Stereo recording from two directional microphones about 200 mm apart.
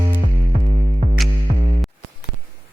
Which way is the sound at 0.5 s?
35° right (ahead or behind).